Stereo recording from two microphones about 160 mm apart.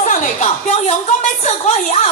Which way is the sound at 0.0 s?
55° left (ahead or behind).